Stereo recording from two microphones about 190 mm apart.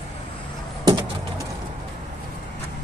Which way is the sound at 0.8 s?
25° right (ahead or behind).